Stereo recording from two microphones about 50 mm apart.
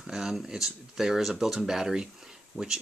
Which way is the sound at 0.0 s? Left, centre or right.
Centre.